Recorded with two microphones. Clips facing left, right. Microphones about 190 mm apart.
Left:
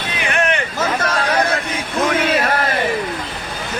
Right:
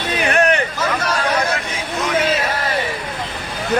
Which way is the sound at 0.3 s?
35° right (ahead or behind).